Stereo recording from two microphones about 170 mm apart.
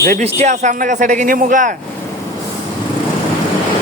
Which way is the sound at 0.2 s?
40° right (ahead or behind).